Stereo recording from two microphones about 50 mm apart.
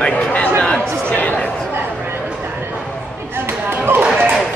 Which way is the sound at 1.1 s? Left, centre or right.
Left.